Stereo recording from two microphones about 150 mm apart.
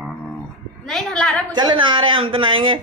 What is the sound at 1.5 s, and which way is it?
Speech, 30° right (ahead or behind).